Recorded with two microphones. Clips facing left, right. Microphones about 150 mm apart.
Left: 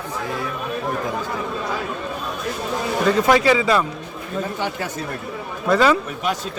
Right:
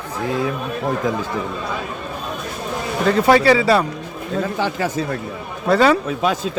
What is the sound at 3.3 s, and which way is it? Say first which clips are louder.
Speech: right 5 dB; 35° right (ahead or behind).